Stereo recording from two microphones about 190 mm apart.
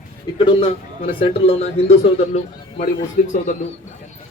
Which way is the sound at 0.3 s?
25° left (ahead or behind).